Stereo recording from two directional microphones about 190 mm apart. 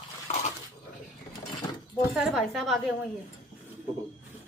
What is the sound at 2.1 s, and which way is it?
Speech, centre (ahead or behind).